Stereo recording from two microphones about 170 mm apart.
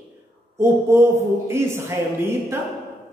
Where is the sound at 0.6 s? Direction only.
15° right (ahead or behind).